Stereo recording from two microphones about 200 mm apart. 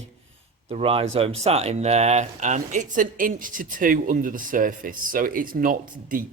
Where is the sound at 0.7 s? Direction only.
30° right (ahead or behind).